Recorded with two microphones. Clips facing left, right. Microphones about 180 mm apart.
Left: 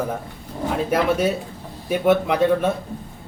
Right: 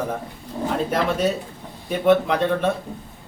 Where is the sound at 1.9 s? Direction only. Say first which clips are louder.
Even; 10° left (ahead or behind).